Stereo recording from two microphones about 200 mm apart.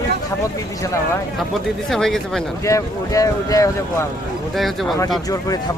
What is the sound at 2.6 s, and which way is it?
Speech, 15° left (ahead or behind).